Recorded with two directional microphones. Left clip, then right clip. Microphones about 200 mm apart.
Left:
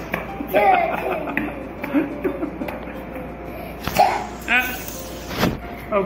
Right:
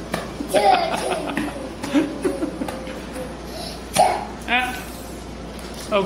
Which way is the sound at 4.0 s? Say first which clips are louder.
Even; centre (ahead or behind).